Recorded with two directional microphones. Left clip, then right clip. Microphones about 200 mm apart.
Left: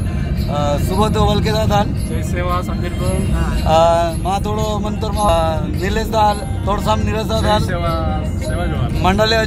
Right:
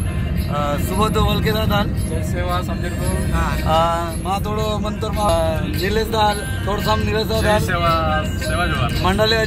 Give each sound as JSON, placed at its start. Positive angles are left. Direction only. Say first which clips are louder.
{"t": 0.7, "sound": "speech", "louder": "left 3 dB", "side_deg": 65}
{"t": 3.6, "sound": "speech", "louder": "left 6 dB", "side_deg": 40}
{"t": 5.2, "sound": "speech", "louder": "left 3 dB", "side_deg": 25}
{"t": 5.5, "sound": "speech", "louder": "left 1 dB", "side_deg": 10}
{"t": 9.0, "sound": "speech", "louder": "left 3 dB", "side_deg": 25}